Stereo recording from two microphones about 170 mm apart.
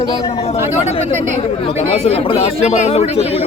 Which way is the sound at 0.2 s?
25° left (ahead or behind).